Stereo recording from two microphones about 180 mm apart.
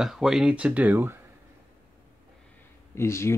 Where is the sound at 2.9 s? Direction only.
15° left (ahead or behind).